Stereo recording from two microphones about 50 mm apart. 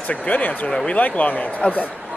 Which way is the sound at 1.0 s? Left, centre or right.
Left.